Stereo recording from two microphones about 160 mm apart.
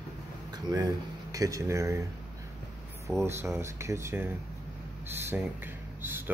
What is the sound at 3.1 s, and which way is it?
Speech, 15° right (ahead or behind).